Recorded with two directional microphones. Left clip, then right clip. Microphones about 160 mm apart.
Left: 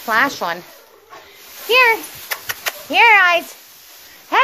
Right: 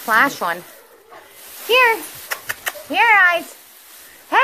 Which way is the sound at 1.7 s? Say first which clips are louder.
Left 1 dB; 10° left (ahead or behind).